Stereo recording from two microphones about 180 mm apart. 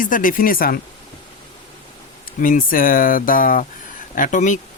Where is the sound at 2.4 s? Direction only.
50° left (ahead or behind).